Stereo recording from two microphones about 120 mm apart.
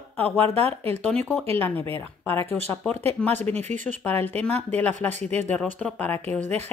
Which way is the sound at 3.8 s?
15° left (ahead or behind).